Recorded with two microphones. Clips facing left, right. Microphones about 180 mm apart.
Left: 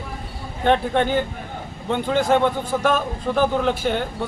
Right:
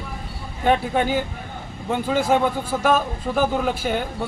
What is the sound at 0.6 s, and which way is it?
A man's voice, 5° right (ahead or behind).